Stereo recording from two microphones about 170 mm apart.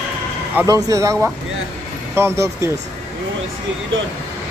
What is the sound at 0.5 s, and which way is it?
Speech, 20° right (ahead or behind).